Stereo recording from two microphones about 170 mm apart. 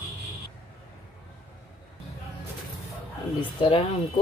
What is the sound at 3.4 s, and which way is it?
Speech, 30° left (ahead or behind).